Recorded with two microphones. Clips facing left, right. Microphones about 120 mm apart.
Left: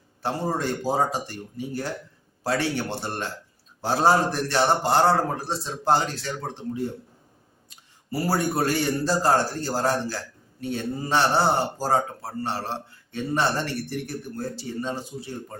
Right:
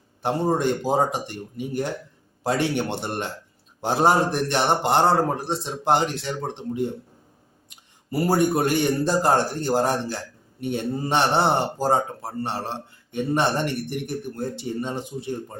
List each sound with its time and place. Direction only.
0.2 s speech: 20° right (ahead or behind)